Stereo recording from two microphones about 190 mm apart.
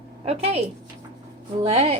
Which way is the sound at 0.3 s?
30° right (ahead or behind).